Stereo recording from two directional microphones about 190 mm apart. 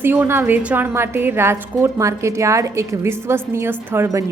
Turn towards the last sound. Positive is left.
turn(degrees=-10)  # may be behind; listen again after turning